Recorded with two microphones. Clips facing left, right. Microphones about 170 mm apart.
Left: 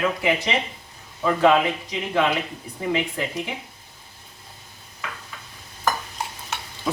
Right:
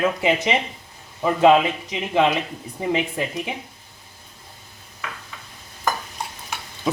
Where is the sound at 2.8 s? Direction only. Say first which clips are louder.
Right 2 dB; 15° right (ahead or behind).